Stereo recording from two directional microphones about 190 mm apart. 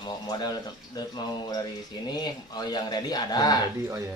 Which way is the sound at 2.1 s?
20° left (ahead or behind).